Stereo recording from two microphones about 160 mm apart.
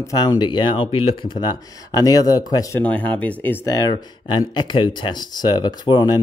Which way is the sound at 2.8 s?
10° left (ahead or behind).